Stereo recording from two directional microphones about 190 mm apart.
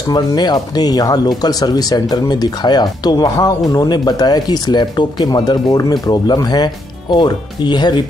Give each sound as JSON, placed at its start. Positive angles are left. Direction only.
{"t": 0.1, "sound": "speech", "side_deg": 20}